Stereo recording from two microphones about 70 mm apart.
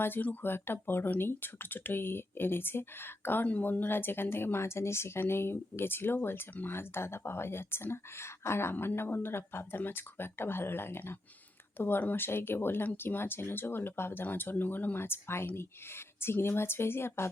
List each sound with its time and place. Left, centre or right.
0.0 s speech: left